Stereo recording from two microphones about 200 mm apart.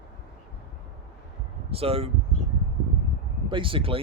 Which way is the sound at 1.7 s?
30° right (ahead or behind).